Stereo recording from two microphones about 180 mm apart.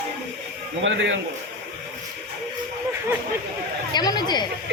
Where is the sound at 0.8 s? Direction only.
90° right.